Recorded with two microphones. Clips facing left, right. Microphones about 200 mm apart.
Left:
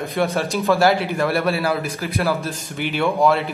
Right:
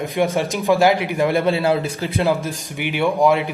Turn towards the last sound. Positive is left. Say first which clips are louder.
# right 1 dB
turn(degrees=-15)  # may be behind; listen again after turning